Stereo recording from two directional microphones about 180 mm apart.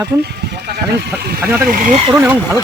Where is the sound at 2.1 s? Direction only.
10° right (ahead or behind).